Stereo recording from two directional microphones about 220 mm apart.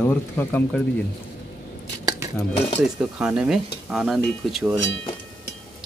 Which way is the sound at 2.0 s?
15° right (ahead or behind).